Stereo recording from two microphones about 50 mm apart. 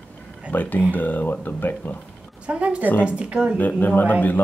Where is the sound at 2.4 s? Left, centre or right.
Right.